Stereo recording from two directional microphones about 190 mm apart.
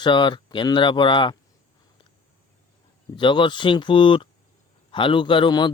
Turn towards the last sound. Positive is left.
turn(degrees=25)  # may be behind; listen again after turning